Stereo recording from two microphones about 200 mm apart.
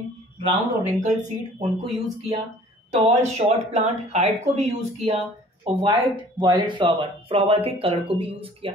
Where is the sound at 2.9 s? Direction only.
35° right (ahead or behind).